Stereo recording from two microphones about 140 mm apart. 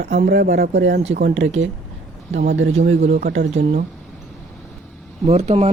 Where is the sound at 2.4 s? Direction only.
55° right (ahead or behind).